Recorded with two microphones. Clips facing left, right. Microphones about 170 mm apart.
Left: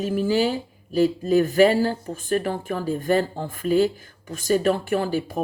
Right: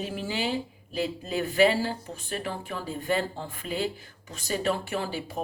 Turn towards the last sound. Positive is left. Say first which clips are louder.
# left 8 dB
turn(degrees=50)  # may be behind; listen again after turning